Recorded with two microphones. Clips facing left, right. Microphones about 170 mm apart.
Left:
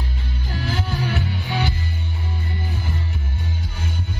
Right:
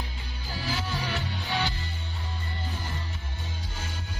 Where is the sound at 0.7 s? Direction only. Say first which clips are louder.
Left 6 dB; 60° left (ahead or behind).